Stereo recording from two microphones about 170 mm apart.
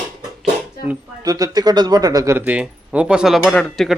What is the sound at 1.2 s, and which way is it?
Speech, 20° right (ahead or behind).